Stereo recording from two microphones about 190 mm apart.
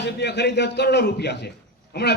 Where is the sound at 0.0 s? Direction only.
60° left (ahead or behind).